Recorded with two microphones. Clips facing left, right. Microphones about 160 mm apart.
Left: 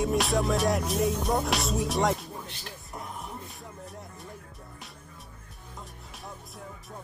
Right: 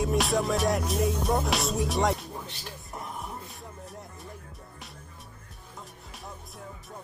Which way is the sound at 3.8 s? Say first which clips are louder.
Even; centre (ahead or behind).